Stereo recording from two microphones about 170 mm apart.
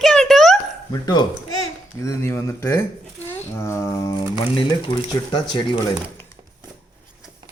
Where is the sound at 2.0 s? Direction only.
15° left (ahead or behind).